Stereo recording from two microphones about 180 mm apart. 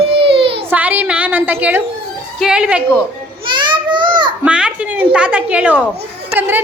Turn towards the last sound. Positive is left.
turn(degrees=-10)  # may be behind; listen again after turning